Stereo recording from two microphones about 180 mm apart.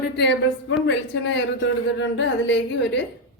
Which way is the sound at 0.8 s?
90° left.